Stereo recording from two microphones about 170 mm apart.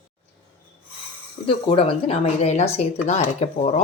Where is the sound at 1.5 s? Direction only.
35° left (ahead or behind).